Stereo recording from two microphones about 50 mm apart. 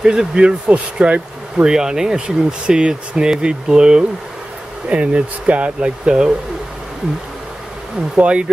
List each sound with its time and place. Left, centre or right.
0.0 s speech: centre
8.2 s speech: right